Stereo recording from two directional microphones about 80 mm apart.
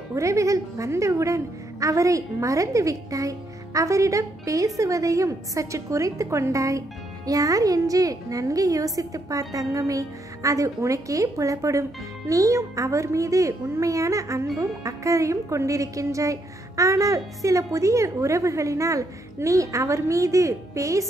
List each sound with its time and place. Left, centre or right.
0.1 s a woman's voice: right